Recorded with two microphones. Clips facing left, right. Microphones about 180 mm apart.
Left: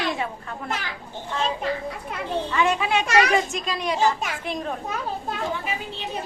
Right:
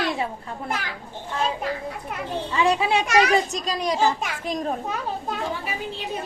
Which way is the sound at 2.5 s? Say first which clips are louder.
Right 2 dB; 30° right (ahead or behind).